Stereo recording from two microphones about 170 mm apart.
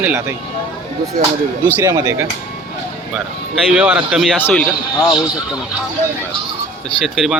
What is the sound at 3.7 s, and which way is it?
Speech, 5° right (ahead or behind).